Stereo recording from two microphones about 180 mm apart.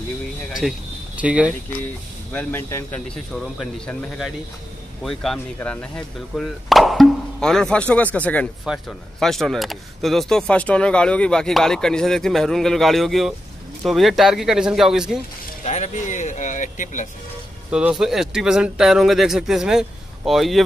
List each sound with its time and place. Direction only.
0.5 s a sound: centre (ahead or behind)
2.3 s speech: 10° left (ahead or behind)
15.6 s speech: 40° left (ahead or behind)
17.6 s speech: 5° right (ahead or behind)